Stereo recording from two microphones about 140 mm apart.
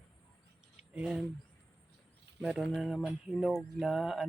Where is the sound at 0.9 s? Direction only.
5° right (ahead or behind).